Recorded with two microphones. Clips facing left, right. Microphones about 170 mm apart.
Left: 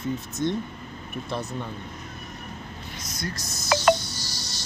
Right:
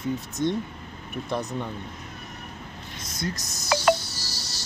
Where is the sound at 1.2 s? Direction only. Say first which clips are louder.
Right 3 dB; 15° right (ahead or behind).